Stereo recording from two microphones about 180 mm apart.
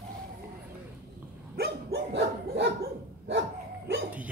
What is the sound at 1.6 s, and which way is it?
Dog, 65° right (ahead or behind).